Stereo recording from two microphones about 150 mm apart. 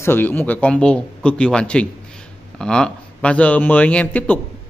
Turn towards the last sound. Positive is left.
turn(degrees=10)  # may be behind; listen again after turning